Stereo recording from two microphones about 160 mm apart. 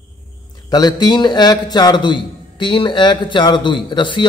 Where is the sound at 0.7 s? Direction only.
25° left (ahead or behind).